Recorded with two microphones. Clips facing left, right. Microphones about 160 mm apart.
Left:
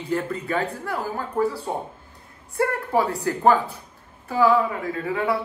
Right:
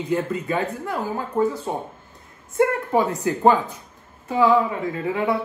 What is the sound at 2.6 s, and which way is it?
Speech, 15° right (ahead or behind).